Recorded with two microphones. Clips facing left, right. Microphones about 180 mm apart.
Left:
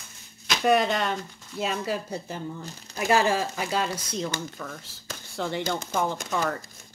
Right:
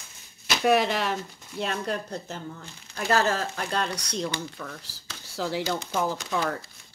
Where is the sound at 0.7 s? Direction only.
Centre (ahead or behind).